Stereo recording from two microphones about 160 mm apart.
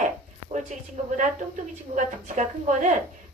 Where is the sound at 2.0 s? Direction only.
50° right (ahead or behind).